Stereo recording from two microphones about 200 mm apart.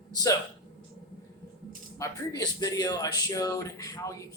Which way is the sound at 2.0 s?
20° left (ahead or behind).